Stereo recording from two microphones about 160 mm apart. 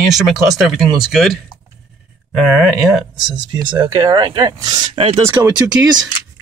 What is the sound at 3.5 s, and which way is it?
Speech, 30° right (ahead or behind).